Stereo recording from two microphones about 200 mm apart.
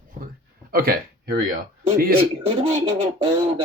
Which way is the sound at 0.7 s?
50° right (ahead or behind).